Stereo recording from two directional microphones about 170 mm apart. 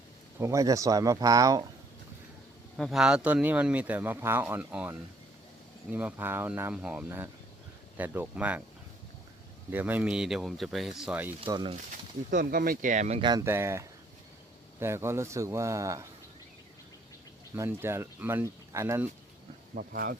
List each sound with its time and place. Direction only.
0.3 s speech: 15° right (ahead or behind)
2.7 s speech: centre (ahead or behind)
9.7 s speech: 10° right (ahead or behind)
11.3 s speech: 25° right (ahead or behind)
12.3 s speech: 55° right (ahead or behind)
13.4 s speech: 15° right (ahead or behind)
17.5 s speech: 15° right (ahead or behind)
19.7 s speech: 60° right (ahead or behind)